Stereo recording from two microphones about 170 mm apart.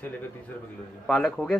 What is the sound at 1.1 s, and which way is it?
Speech, centre (ahead or behind).